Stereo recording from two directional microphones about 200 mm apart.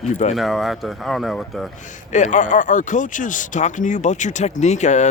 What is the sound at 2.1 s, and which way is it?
Speech, 35° left (ahead or behind).